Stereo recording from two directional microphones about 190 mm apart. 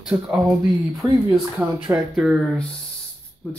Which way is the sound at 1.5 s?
5° right (ahead or behind).